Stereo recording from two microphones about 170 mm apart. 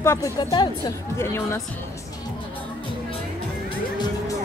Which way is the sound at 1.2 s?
15° left (ahead or behind).